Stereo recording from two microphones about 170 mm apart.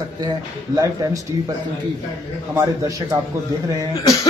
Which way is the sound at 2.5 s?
20° right (ahead or behind).